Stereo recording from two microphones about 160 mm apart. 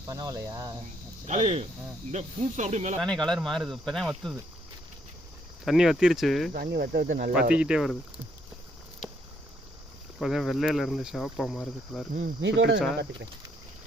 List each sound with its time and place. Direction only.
0.1 s speech: 20° right (ahead or behind)
1.3 s speech: 45° right (ahead or behind)
3.0 s speech: 5° left (ahead or behind)
5.6 s speech: centre (ahead or behind)
6.5 s speech: 75° right (ahead or behind)
7.5 s speech: 5° right (ahead or behind)
10.2 s speech: centre (ahead or behind)
12.1 s speech: 75° right (ahead or behind)